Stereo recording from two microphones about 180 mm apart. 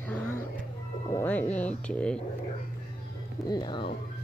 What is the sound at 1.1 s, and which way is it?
Music, 10° left (ahead or behind).